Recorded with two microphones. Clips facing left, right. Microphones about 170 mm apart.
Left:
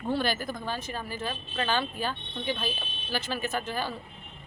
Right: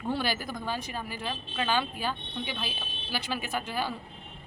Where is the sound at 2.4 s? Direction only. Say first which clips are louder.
Left 8 dB; 45° left (ahead or behind).